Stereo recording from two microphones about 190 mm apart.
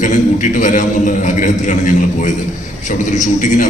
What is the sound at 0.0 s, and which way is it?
A man's voice, 40° left (ahead or behind).